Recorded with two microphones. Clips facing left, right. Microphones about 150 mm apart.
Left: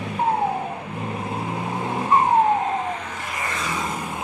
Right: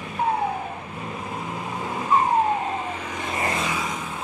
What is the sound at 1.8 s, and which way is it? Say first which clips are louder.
Vehicle: left 3 dB; 25° left (ahead or behind).